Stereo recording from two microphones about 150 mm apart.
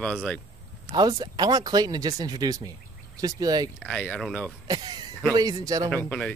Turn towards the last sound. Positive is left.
turn(degrees=10)  # may be behind; listen again after turning